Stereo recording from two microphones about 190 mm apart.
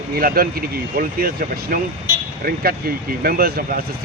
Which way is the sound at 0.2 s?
50° right (ahead or behind).